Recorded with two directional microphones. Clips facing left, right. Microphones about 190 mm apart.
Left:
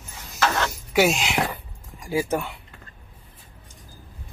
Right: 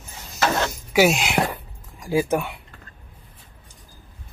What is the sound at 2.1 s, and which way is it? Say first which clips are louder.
Speech: right 3 dB; 15° right (ahead or behind).